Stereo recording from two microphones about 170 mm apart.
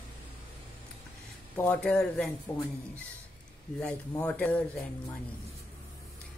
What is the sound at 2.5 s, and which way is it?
Speech, 15° left (ahead or behind).